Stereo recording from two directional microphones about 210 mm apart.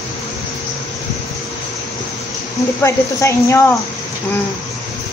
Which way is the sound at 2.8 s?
15° left (ahead or behind).